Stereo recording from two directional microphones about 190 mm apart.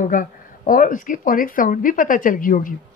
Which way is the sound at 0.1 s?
45° left (ahead or behind).